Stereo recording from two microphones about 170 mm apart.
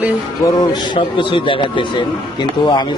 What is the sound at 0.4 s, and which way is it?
Speech, 25° left (ahead or behind).